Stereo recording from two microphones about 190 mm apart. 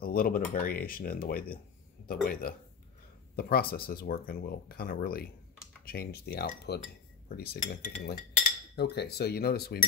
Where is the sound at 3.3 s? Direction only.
55° left (ahead or behind).